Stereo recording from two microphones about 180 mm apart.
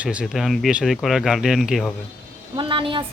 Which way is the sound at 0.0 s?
5° right (ahead or behind).